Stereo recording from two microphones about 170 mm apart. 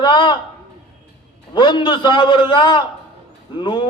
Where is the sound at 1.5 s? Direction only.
25° left (ahead or behind).